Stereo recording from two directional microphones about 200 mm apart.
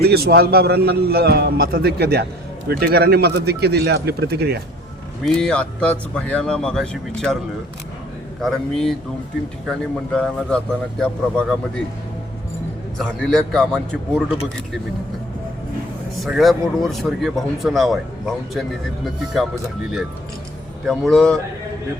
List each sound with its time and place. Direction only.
0.0 s a man's voice: 50° right (ahead or behind)
5.2 s speech: centre (ahead or behind)
8.4 s speech: centre (ahead or behind)
10.2 s speech: 5° left (ahead or behind)
13.0 s speech: 5° left (ahead or behind)
16.2 s speech: centre (ahead or behind)
20.8 s speech: centre (ahead or behind)